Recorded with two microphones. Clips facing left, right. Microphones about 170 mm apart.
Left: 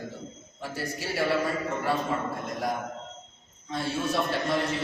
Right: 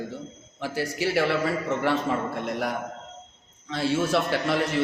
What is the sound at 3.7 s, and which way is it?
Speech, 85° right.